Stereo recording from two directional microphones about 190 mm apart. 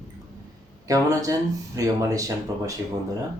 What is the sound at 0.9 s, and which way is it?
Speech, 15° right (ahead or behind).